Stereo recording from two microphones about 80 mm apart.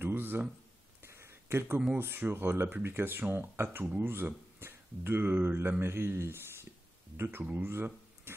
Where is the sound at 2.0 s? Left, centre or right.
Right.